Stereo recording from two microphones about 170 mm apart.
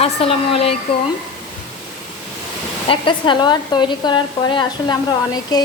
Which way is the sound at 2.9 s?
30° left (ahead or behind).